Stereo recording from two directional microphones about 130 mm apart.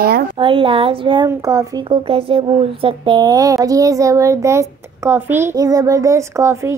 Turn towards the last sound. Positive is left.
turn(degrees=-25)  # may be behind; listen again after turning